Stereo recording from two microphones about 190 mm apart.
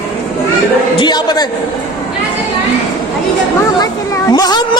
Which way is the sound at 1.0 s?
20° left (ahead or behind).